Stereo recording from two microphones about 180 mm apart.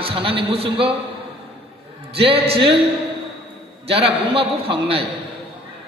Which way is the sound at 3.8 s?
35° right (ahead or behind).